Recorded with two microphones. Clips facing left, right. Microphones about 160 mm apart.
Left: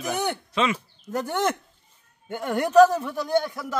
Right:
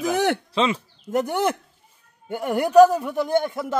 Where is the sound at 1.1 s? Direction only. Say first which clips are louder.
Right 3 dB; 15° right (ahead or behind).